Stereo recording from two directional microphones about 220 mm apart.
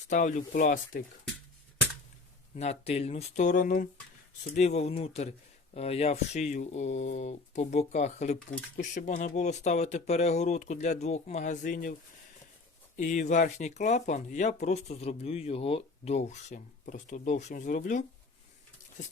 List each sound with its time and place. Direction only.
0.1 s speech: 35° left (ahead or behind)
2.6 s speech: 30° left (ahead or behind)
13.0 s speech: 35° left (ahead or behind)